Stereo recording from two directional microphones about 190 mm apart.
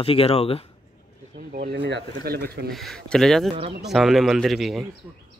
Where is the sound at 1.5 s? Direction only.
60° right (ahead or behind).